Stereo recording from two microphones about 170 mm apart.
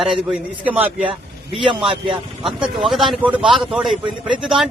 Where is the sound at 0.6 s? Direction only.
10° right (ahead or behind).